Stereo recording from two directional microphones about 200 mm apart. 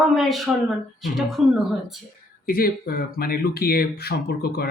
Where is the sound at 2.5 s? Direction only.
50° left (ahead or behind).